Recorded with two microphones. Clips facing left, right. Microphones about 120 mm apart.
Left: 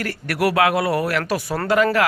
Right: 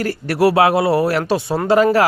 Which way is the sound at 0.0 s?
30° right (ahead or behind).